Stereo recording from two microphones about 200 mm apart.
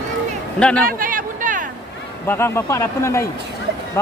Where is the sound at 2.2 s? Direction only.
10° left (ahead or behind).